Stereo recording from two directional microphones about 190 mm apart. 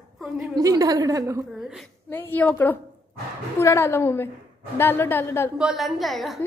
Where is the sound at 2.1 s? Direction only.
10° left (ahead or behind).